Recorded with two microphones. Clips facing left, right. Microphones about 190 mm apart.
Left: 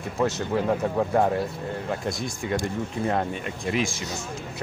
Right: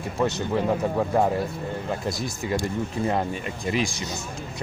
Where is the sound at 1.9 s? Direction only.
Centre (ahead or behind).